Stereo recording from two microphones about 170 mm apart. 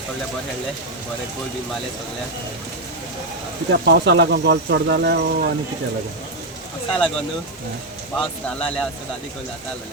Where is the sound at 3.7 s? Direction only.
75° right (ahead or behind).